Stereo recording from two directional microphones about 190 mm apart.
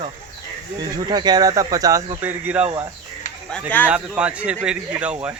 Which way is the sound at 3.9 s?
5° right (ahead or behind).